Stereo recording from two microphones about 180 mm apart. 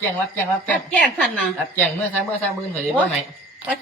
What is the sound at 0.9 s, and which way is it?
Speech, 5° left (ahead or behind).